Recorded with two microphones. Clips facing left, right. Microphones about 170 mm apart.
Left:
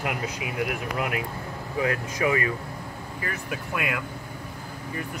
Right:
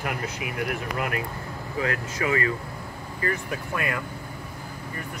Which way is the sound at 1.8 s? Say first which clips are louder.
Left 2 dB; 15° left (ahead or behind).